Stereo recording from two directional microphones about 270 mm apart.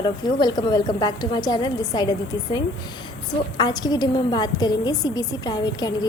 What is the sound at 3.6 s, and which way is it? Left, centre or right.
A woman's voice, centre.